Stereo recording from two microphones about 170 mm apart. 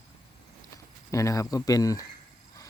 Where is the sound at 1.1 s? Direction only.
20° left (ahead or behind).